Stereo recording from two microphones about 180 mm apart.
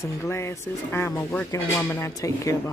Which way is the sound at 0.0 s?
15° left (ahead or behind).